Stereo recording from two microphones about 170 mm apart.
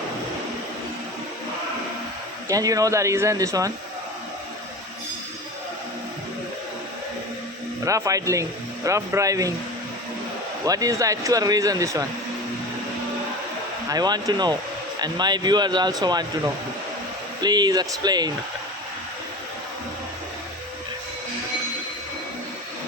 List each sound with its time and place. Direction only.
2.5 s speech: 20° right (ahead or behind)
7.9 s speech: 20° right (ahead or behind)
10.7 s speech: 20° right (ahead or behind)
13.9 s speech: 25° right (ahead or behind)
17.4 s speech: 25° right (ahead or behind)